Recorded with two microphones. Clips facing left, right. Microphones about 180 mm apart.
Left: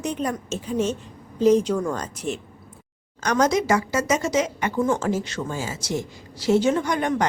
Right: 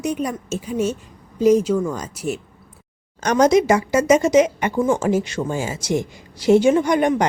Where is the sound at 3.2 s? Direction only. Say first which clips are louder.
Right 6 dB; 20° right (ahead or behind).